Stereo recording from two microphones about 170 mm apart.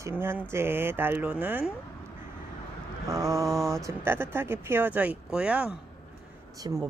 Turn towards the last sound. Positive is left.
turn(degrees=-25)  # may be behind; listen again after turning